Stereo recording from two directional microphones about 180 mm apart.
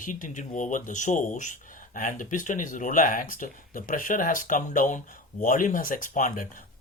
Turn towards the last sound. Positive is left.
turn(degrees=50)  # may be behind; listen again after turning